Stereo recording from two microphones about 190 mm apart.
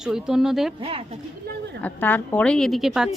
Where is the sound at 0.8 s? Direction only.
30° right (ahead or behind).